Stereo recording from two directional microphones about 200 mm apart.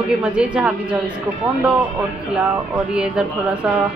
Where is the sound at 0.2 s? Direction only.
5° right (ahead or behind).